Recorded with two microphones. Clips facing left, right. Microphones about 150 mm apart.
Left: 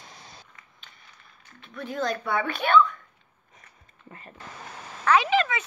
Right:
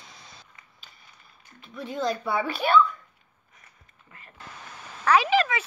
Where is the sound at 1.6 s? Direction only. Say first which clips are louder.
Even; centre (ahead or behind).